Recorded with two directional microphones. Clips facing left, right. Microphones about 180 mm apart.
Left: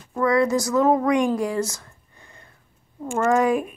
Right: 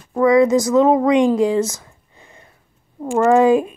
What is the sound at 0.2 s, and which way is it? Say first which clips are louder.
A woman's voice: right 7 dB; 20° right (ahead or behind).